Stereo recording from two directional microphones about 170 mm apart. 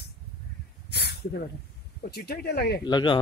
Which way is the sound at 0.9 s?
70° left (ahead or behind).